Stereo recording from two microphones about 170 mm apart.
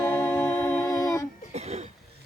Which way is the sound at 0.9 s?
20° left (ahead or behind).